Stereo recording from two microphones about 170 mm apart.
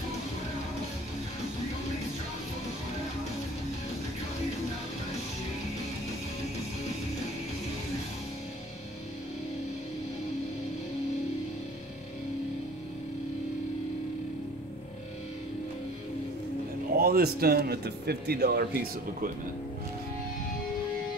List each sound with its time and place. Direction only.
16.9 s speech: 65° right (ahead or behind)